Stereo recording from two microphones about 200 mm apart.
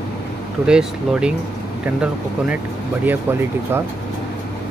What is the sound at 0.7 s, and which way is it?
Speech, 5° right (ahead or behind).